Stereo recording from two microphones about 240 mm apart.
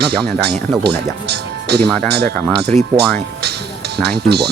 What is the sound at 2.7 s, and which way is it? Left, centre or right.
Speech, right.